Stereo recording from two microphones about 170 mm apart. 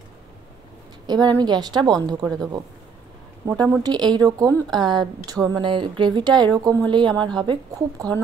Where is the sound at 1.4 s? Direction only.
25° right (ahead or behind).